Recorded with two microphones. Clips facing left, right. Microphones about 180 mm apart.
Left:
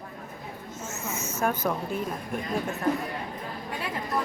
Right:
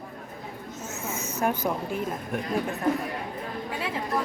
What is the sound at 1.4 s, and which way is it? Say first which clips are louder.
Speech: right 1 dB; 15° right (ahead or behind).